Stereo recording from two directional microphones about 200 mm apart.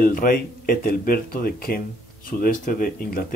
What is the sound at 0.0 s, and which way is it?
Speech, 45° left (ahead or behind).